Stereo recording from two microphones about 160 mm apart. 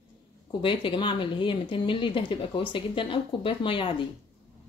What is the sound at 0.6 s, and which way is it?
A woman's voice, 30° left (ahead or behind).